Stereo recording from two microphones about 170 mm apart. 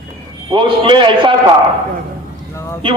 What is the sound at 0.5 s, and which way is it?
Speech, 30° right (ahead or behind).